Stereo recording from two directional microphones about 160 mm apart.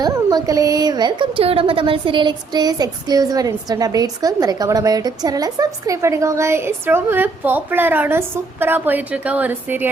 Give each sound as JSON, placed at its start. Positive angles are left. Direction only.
{"t": 0.0, "sound": "speech", "side_deg": -25}